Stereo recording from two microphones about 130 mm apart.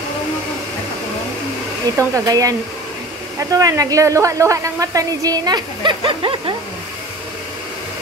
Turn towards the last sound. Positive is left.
turn(degrees=-40)  # may be behind; listen again after turning